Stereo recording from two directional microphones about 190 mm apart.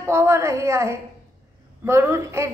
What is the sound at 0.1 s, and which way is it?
A woman's voice, 15° right (ahead or behind).